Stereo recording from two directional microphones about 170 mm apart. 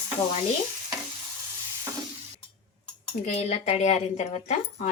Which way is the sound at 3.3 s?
40° left (ahead or behind).